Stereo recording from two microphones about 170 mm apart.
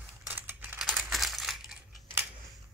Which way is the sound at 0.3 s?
10° right (ahead or behind).